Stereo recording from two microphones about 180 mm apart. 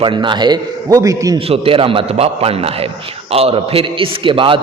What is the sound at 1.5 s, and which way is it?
A man's voice, 30° right (ahead or behind).